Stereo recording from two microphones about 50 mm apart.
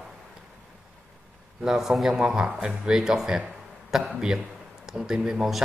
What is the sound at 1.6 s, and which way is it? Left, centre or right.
Speech, centre.